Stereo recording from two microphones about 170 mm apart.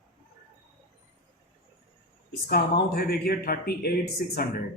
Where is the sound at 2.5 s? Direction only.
65° left (ahead or behind).